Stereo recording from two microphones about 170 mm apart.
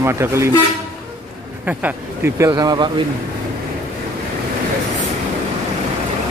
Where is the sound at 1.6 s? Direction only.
10° right (ahead or behind).